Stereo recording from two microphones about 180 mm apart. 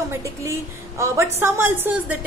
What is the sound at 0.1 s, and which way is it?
A woman's voice, 15° right (ahead or behind).